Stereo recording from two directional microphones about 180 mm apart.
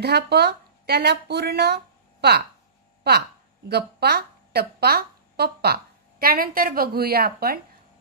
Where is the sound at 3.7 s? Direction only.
65° right (ahead or behind).